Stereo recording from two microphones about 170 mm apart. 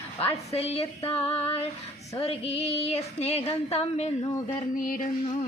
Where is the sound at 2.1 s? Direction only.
35° left (ahead or behind).